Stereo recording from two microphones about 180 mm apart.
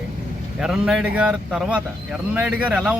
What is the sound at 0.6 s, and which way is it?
A man's voice, 5° right (ahead or behind).